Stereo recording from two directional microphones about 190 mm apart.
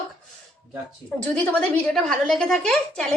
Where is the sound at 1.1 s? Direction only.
5° left (ahead or behind).